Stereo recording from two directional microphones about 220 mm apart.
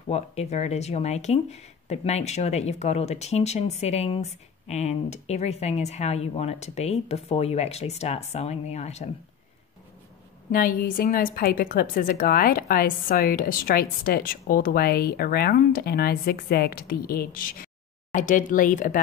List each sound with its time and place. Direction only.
0.1 s speech: 30° left (ahead or behind)
10.5 s a woman's voice: 40° left (ahead or behind)